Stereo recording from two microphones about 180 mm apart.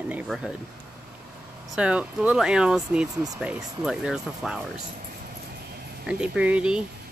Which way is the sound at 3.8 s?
5° right (ahead or behind).